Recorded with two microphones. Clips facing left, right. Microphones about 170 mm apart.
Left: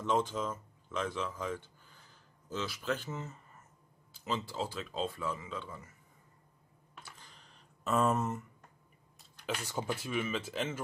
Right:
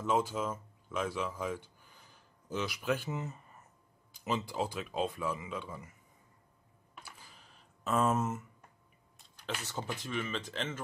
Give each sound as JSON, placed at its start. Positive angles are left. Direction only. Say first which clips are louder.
{"t": 0.0, "sound": "speech", "louder": "even", "side_deg": -5}
{"t": 7.0, "sound": "computer keyboard", "louder": "right 1 dB", "side_deg": -10}
{"t": 9.2, "sound": "speech", "louder": "left 2 dB", "side_deg": 10}